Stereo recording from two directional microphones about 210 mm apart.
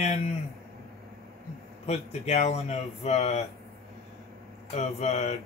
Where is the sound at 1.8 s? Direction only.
30° left (ahead or behind).